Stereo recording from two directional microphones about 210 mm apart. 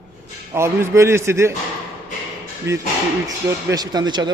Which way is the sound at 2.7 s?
15° right (ahead or behind).